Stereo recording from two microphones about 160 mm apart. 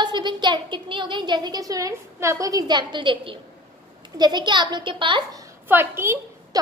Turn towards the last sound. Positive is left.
turn(degrees=-15)  # may be behind; listen again after turning